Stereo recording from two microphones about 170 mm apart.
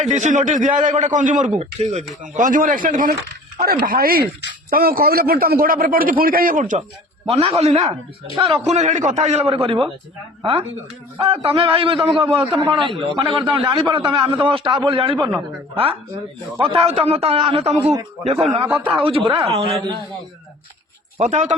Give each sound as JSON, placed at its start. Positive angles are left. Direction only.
{"t": 0.1, "sound": "a man's voice", "side_deg": -45}
{"t": 7.3, "sound": "a man's voice", "side_deg": -35}
{"t": 11.2, "sound": "a man's voice", "side_deg": -35}
{"t": 18.3, "sound": "a man's voice", "side_deg": 0}
{"t": 18.9, "sound": "a man's voice", "side_deg": -30}
{"t": 21.2, "sound": "a man's voice", "side_deg": -45}